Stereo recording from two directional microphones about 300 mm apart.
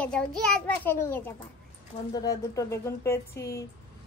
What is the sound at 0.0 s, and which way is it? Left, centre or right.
A child's voice, centre.